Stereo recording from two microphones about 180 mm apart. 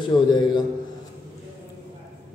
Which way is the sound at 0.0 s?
25° left (ahead or behind).